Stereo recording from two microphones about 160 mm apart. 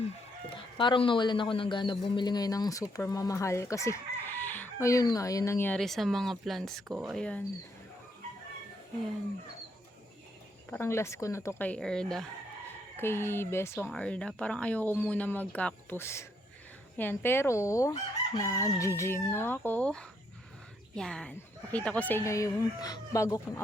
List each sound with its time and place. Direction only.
0.8 s a man's voice: 30° left (ahead or behind); by 7.4 s 5° left (ahead or behind)
10.7 s speech: 15° left (ahead or behind)
13.0 s speech: 15° left (ahead or behind)